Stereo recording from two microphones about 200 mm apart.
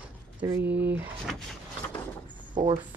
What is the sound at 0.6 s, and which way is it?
Speech, 10° right (ahead or behind).